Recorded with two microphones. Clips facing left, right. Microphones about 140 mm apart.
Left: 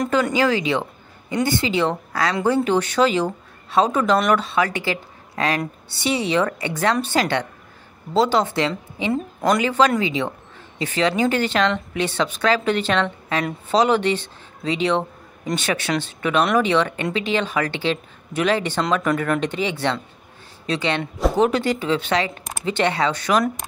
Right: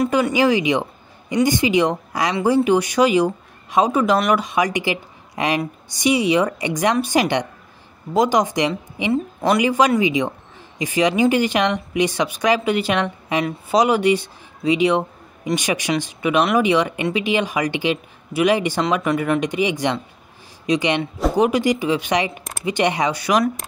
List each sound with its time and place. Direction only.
0.0 s speech: 10° right (ahead or behind)